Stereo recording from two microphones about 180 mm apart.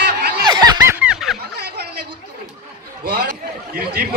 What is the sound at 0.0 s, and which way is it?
Snicker, 65° right (ahead or behind).